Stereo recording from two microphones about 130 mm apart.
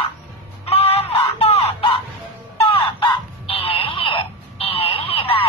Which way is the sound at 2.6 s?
45° left (ahead or behind).